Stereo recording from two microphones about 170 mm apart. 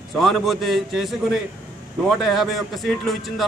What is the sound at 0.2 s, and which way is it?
A man's voice, centre (ahead or behind).